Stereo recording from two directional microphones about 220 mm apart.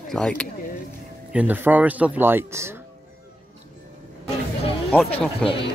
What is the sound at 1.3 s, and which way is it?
Speech, 5° right (ahead or behind).